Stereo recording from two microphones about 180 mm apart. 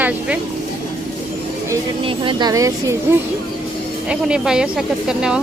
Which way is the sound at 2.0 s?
30° right (ahead or behind).